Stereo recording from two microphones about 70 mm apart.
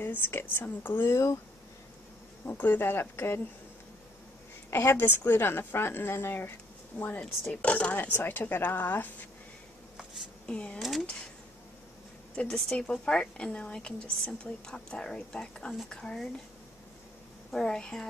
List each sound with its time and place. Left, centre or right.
0.0 s a woman's voice: left
2.4 s a woman's voice: left
4.6 s a woman's voice: left
10.4 s speech: centre
10.8 s speech: centre
12.4 s a woman's voice: centre
17.5 s a woman's voice: centre